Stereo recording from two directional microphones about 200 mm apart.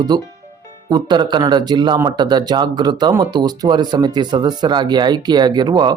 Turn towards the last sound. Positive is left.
turn(degrees=-20)  # may be behind; listen again after turning